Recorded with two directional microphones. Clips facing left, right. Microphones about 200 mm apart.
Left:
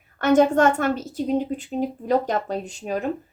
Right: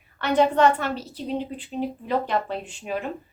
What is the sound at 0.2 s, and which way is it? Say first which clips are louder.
A woman's voice: left 3 dB; 45° left (ahead or behind).